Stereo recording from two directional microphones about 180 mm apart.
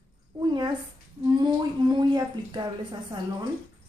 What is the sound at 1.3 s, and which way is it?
Speech, 25° right (ahead or behind).